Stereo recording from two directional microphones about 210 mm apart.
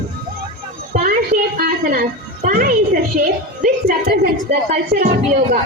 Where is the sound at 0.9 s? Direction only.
45° right (ahead or behind).